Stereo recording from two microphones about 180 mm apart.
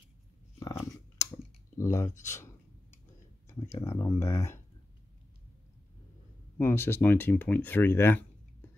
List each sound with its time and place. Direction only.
0.6 s chewing: 15° left (ahead or behind)
2.2 s speech: 15° left (ahead or behind)
3.7 s speech: 15° left (ahead or behind)
6.6 s speech: 10° left (ahead or behind)